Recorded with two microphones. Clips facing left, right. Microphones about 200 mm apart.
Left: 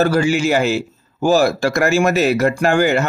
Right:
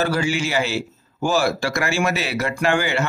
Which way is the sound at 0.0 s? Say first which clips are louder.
Left 6 dB; 45° left (ahead or behind).